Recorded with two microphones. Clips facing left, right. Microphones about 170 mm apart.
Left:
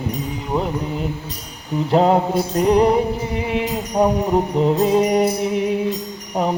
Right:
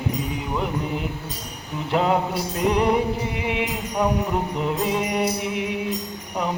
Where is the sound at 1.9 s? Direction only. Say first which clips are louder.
Left 6 dB; 35° left (ahead or behind).